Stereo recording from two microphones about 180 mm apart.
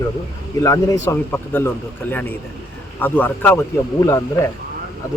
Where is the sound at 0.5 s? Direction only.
20° left (ahead or behind).